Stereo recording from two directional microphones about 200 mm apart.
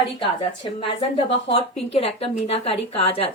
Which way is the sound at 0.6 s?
25° left (ahead or behind).